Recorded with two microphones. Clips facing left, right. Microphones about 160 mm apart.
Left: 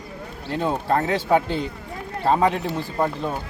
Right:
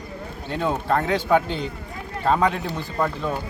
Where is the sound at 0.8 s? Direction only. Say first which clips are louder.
Even; 30° left (ahead or behind).